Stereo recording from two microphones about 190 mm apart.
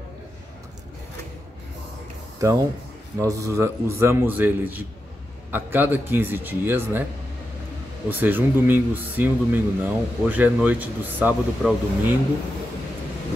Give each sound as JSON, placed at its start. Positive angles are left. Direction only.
{"t": 2.3, "sound": "speech", "side_deg": -15}
{"t": 8.1, "sound": "speech", "side_deg": -10}